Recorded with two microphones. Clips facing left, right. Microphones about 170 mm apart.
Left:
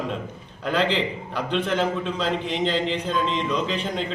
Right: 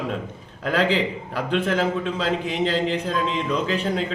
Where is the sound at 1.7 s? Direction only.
5° right (ahead or behind).